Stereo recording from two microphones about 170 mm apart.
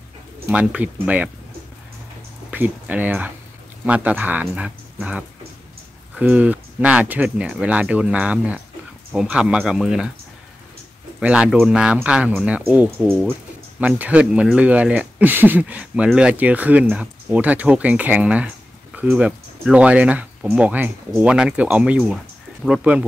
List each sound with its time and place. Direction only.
0.5 s speech: 5° right (ahead or behind)
2.5 s speech: 10° right (ahead or behind)
11.1 s speech: 5° right (ahead or behind)